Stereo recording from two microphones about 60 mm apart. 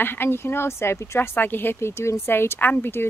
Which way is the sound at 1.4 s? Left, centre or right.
Left.